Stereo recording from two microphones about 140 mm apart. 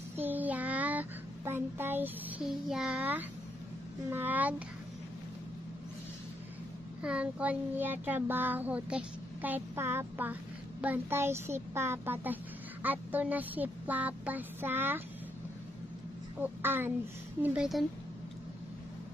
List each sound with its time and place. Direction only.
0.2 s child singing: 10° right (ahead or behind)
7.0 s child singing: 10° right (ahead or behind)
16.3 s child singing: 15° right (ahead or behind)
17.4 s a woman's voice: 5° right (ahead or behind)